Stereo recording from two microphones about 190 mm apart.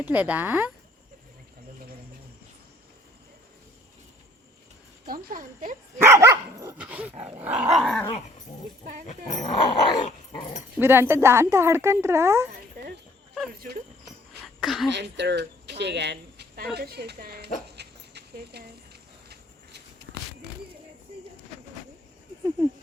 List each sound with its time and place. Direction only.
0.0 s a woman's voice: 10° right (ahead or behind)
5.0 s speech: 45° right (ahead or behind)
6.0 s dog: 15° right (ahead or behind)
6.7 s a woman's voice: 5° right (ahead or behind)
9.0 s speech: 35° left (ahead or behind)
9.6 s dog: 25° left (ahead or behind)
10.8 s a woman's voice: 10° right (ahead or behind)
14.0 s a sound: centre (ahead or behind)
14.9 s speech: 65° right (ahead or behind)
17.7 s dog: 60° right (ahead or behind)